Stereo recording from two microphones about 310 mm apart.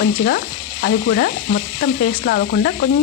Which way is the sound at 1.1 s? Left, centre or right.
Left.